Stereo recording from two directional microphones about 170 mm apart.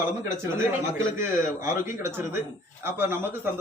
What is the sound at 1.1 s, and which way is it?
Speech, 15° right (ahead or behind).